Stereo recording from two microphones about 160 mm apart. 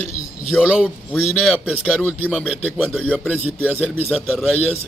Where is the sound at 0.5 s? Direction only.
5° right (ahead or behind).